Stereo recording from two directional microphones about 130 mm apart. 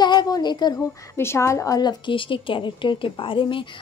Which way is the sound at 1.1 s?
20° left (ahead or behind).